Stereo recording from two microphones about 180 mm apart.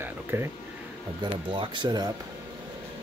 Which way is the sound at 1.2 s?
25° right (ahead or behind).